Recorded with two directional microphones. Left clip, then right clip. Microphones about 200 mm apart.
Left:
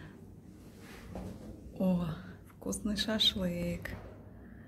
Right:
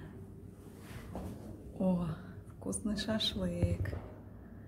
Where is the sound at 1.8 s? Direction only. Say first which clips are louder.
Left 1 dB; 10° left (ahead or behind).